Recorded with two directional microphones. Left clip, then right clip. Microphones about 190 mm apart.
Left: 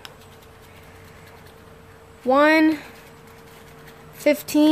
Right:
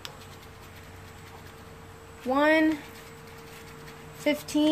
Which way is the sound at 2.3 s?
60° left (ahead or behind).